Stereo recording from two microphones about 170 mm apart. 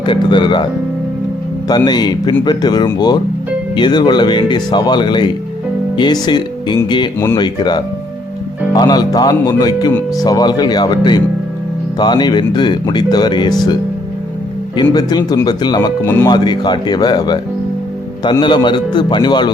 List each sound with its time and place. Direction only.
0.0 s speech: 25° left (ahead or behind)
14.8 s speech: 25° left (ahead or behind)
16.0 s speech: 15° left (ahead or behind)
16.3 s speech: 25° left (ahead or behind)